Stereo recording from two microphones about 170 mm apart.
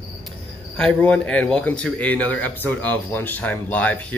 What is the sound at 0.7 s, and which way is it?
Speech, 5° left (ahead or behind).